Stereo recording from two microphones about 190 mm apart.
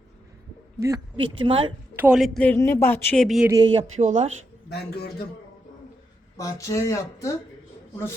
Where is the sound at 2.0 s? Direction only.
5° right (ahead or behind).